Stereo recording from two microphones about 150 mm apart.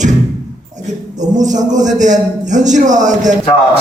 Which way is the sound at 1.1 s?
55° right (ahead or behind).